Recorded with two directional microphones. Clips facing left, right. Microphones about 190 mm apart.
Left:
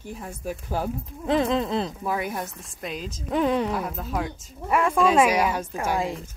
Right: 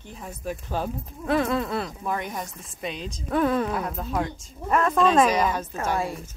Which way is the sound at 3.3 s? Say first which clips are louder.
Even; 15° left (ahead or behind).